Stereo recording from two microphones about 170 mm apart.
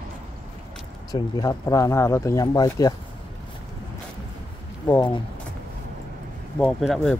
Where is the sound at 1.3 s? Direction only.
25° left (ahead or behind).